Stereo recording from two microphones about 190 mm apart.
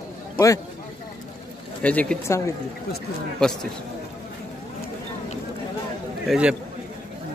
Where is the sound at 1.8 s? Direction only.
5° left (ahead or behind).